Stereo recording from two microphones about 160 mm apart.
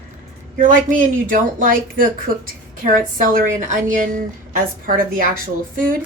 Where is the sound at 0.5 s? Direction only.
60° right (ahead or behind).